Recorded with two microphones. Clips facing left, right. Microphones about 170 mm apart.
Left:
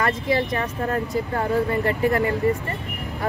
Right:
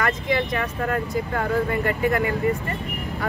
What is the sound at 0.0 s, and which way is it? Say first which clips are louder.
Speech: left 1 dB; 35° left (ahead or behind).